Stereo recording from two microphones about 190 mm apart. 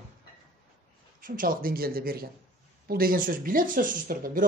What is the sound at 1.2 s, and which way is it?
Speech, 45° right (ahead or behind).